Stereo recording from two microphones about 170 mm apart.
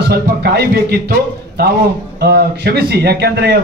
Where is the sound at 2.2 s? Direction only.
70° right (ahead or behind).